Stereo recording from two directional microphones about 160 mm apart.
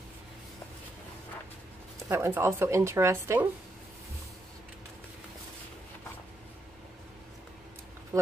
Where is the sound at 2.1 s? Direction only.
15° right (ahead or behind).